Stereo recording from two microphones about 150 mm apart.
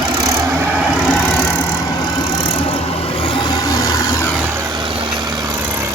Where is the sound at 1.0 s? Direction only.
Centre (ahead or behind).